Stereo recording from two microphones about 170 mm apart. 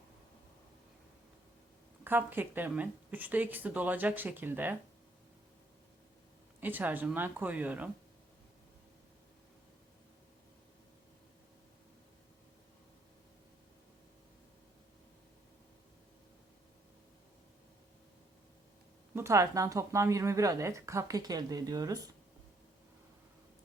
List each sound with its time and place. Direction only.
2.0 s speech: 10° right (ahead or behind)
6.6 s speech: 10° right (ahead or behind)
19.1 s speech: 15° right (ahead or behind)